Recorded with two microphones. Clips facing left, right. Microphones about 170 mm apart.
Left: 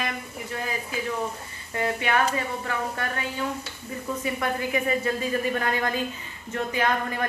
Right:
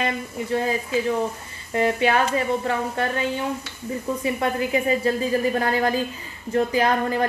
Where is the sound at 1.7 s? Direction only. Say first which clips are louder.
Right 6 dB; 25° right (ahead or behind).